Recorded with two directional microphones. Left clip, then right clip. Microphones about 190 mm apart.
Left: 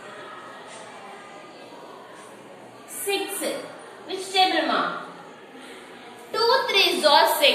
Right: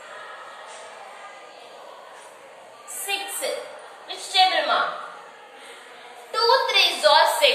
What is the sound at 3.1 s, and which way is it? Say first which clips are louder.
Speech: left 2 dB; centre (ahead or behind).